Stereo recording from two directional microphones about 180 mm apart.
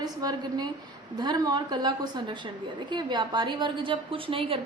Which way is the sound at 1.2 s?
20° right (ahead or behind).